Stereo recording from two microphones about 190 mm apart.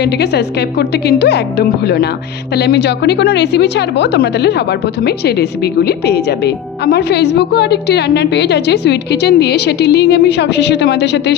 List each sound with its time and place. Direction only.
0.0 s a woman's voice: 60° left (ahead or behind)